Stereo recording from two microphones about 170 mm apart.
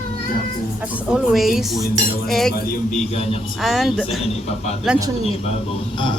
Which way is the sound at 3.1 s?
40° left (ahead or behind).